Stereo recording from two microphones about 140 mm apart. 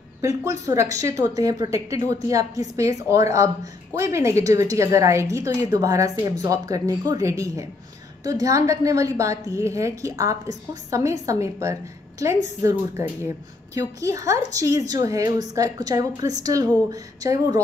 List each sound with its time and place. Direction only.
0.2 s a woman's voice: 20° right (ahead or behind)